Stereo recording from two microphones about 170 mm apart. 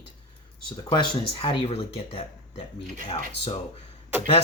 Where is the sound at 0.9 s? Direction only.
30° left (ahead or behind).